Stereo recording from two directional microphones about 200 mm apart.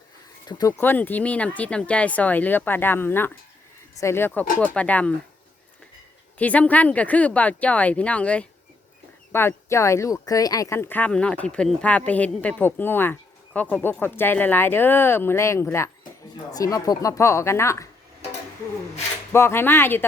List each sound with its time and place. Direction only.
0.4 s speech: 15° left (ahead or behind)
6.4 s speech: 5° left (ahead or behind)
19.3 s speech: 10° left (ahead or behind)